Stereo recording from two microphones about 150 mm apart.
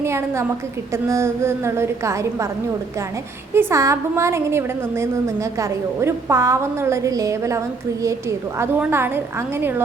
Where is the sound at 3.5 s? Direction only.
20° right (ahead or behind).